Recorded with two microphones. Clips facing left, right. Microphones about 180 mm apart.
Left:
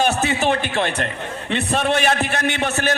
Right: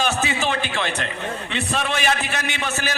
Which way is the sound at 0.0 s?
60° left (ahead or behind).